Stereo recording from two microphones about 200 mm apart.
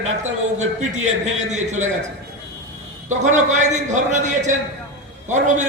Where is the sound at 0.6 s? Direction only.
35° right (ahead or behind).